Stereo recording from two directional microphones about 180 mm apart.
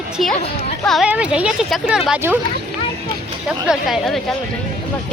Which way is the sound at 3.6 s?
5° right (ahead or behind).